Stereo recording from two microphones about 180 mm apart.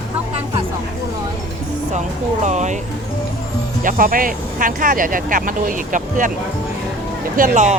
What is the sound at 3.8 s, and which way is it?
Speech, 50° right (ahead or behind).